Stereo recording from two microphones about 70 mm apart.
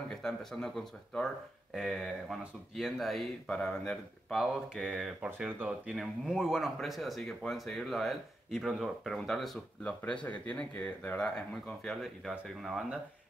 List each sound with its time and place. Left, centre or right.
0.1 s speech: centre
3.4 s speech: centre
4.4 s speech: centre
9.8 s speech: centre
12.0 s speech: centre